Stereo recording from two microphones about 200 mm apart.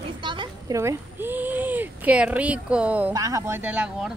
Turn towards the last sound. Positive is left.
turn(degrees=-5)  # may be behind; listen again after turning